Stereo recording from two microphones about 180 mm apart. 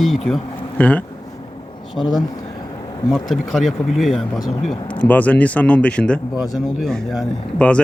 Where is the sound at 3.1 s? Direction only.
Centre (ahead or behind).